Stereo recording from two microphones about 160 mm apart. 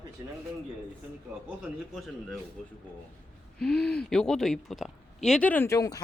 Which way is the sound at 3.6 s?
5° left (ahead or behind).